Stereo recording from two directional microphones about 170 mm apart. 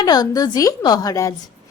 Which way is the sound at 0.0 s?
25° left (ahead or behind).